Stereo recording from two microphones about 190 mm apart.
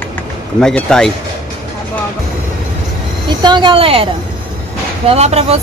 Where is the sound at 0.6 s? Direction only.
5° left (ahead or behind).